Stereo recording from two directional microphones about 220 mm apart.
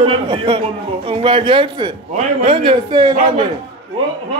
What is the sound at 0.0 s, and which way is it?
A man's voice, 25° right (ahead or behind).